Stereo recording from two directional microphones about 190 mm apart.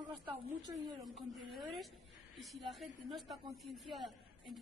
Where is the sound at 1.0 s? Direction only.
Centre (ahead or behind).